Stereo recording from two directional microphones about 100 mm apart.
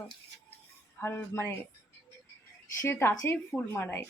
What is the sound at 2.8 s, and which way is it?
Speech, 25° left (ahead or behind).